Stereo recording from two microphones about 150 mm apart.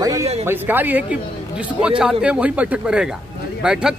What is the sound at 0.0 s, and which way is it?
A man's voice, 20° right (ahead or behind).